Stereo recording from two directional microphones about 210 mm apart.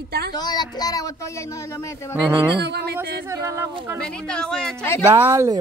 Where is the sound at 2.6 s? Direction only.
50° right (ahead or behind).